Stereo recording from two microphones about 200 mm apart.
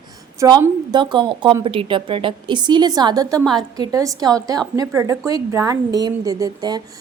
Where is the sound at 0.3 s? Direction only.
20° right (ahead or behind).